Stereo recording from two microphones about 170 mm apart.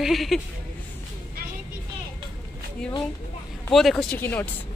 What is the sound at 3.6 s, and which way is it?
Speech, centre (ahead or behind).